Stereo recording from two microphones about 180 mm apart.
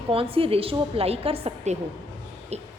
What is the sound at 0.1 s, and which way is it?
A woman's voice, 30° right (ahead or behind).